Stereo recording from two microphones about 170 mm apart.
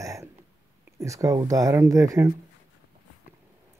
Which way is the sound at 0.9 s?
20° right (ahead or behind).